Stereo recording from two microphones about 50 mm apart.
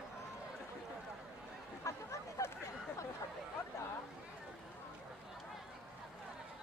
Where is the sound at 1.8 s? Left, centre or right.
Left.